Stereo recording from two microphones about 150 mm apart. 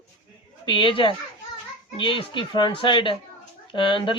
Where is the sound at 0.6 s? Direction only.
35° left (ahead or behind).